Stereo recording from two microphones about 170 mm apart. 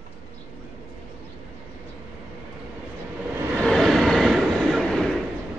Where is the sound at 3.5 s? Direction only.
Centre (ahead or behind).